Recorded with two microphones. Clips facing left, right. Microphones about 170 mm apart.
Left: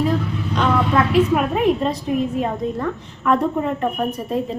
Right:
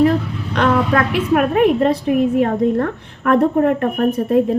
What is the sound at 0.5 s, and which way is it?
A woman's voice, 65° right (ahead or behind).